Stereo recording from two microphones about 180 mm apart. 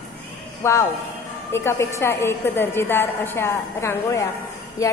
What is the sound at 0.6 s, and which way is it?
A woman's voice, 15° left (ahead or behind).